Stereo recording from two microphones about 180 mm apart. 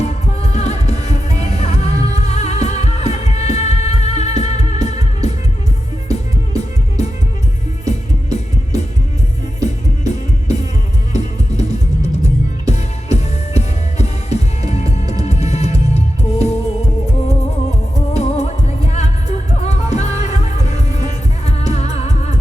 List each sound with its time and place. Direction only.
0.0 s music: 35° left (ahead or behind)
12.2 s music: 35° left (ahead or behind)